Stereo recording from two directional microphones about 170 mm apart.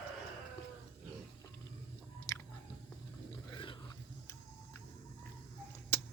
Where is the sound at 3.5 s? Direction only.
30° left (ahead or behind).